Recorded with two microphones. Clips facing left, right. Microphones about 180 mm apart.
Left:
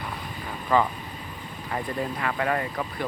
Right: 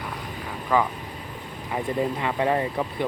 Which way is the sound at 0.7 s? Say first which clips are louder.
Even; 5° right (ahead or behind).